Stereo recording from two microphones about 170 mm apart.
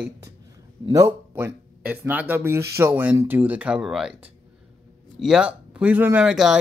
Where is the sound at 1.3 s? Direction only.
10° right (ahead or behind).